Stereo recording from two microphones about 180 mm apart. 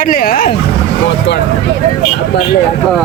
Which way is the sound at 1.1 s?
70° left (ahead or behind).